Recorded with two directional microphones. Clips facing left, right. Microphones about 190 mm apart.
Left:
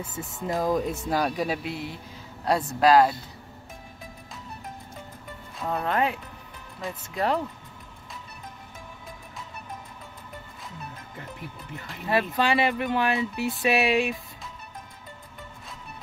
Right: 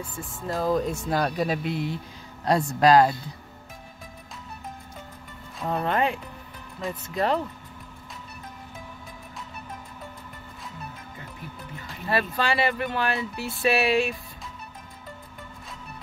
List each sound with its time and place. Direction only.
0.6 s speech: 10° left (ahead or behind)
5.6 s speech: centre (ahead or behind)
12.1 s speech: 15° left (ahead or behind)